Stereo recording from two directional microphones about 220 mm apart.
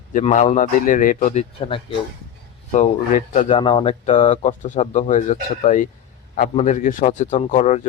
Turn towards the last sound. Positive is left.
turn(degrees=30)  # may be behind; listen again after turning